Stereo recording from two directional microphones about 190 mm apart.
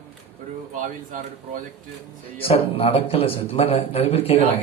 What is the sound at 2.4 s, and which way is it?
A man's voice, 30° left (ahead or behind).